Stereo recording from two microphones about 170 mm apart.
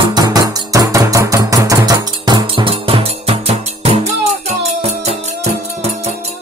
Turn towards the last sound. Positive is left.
turn(degrees=-40)  # may be behind; listen again after turning